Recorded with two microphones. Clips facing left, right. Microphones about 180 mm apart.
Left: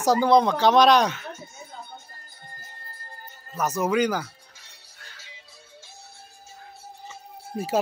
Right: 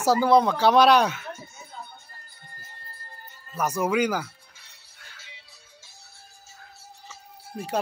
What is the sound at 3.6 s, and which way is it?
Speech, 10° right (ahead or behind).